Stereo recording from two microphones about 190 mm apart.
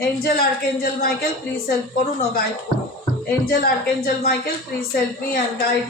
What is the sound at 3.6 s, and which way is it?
A woman's voice, 50° left (ahead or behind).